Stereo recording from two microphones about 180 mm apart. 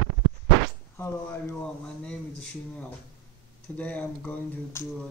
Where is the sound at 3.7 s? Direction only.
10° left (ahead or behind).